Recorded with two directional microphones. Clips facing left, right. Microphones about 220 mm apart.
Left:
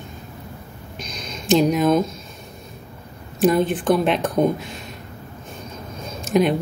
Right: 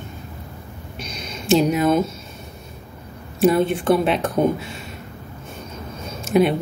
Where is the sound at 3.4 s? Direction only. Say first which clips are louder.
Right 1 dB; centre (ahead or behind).